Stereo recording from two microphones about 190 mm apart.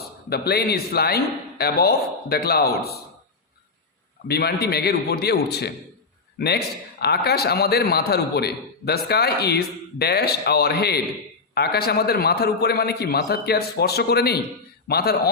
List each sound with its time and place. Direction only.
0.3 s a man's voice: 55° left (ahead or behind)
4.3 s a man's voice: 55° left (ahead or behind)
7.0 s a man's voice: 55° left (ahead or behind)